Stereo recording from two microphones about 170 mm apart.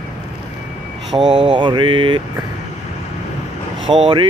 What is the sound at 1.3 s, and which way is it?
Mantra, 30° right (ahead or behind).